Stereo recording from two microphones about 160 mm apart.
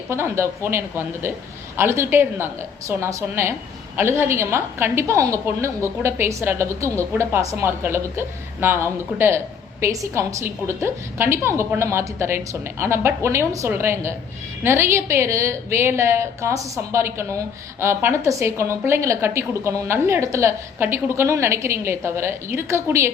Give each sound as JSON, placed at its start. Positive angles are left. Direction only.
{"t": 0.1, "sound": "a woman's voice", "side_deg": -15}